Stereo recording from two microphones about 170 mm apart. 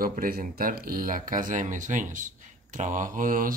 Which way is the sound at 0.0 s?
60° right (ahead or behind).